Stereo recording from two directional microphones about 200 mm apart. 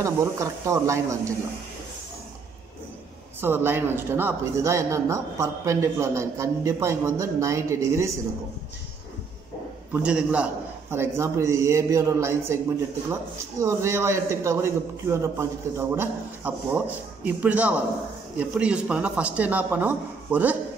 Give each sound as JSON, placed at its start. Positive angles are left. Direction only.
{"t": 0.0, "sound": "a woman's voice", "side_deg": -15}
{"t": 3.3, "sound": "a woman's voice", "side_deg": -10}
{"t": 10.0, "sound": "a woman's voice", "side_deg": -5}
{"t": 13.6, "sound": "a woman's voice", "side_deg": -15}